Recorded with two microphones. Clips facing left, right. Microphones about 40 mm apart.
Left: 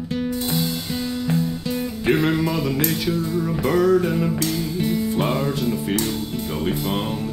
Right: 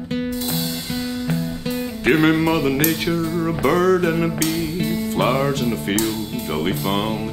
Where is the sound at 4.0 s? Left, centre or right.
Right.